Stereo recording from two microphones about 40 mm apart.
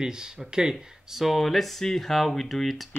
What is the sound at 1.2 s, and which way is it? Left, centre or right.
Speech, centre.